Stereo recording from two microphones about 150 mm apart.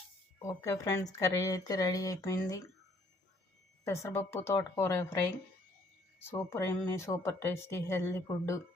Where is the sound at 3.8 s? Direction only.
20° left (ahead or behind).